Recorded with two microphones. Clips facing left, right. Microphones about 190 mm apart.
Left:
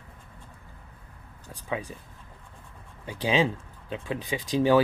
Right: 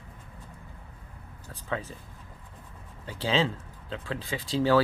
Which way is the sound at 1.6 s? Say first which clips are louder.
Left 1 dB; 15° left (ahead or behind).